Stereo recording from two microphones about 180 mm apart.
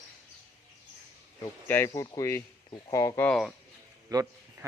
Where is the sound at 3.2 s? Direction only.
Centre (ahead or behind).